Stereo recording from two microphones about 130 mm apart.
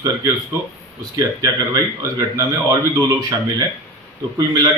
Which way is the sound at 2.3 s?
30° right (ahead or behind).